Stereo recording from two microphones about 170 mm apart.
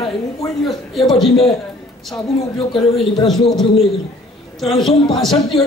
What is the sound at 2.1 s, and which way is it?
Speech, 30° left (ahead or behind).